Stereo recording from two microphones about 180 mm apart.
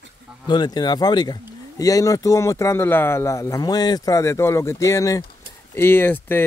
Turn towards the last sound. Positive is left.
turn(degrees=10)  # may be behind; listen again after turning